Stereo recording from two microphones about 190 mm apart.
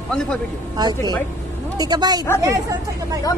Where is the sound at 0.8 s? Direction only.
20° right (ahead or behind).